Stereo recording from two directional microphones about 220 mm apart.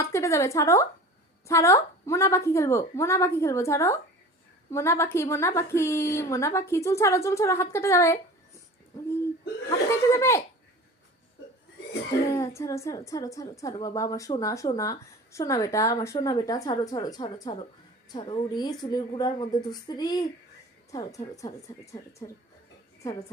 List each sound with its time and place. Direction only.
0.0 s a woman's voice: 15° left (ahead or behind)
9.6 s a woman's voice: 15° left (ahead or behind)
12.3 s a woman's voice: 15° left (ahead or behind)